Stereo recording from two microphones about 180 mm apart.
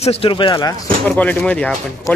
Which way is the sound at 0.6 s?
20° left (ahead or behind).